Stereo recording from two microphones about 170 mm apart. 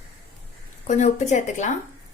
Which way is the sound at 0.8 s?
45° left (ahead or behind).